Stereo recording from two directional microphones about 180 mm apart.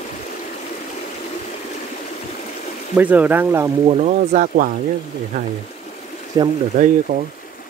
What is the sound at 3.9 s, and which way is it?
Speech, 40° right (ahead or behind).